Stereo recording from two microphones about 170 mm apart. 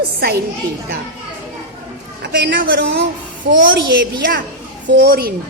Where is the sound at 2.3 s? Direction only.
75° right (ahead or behind).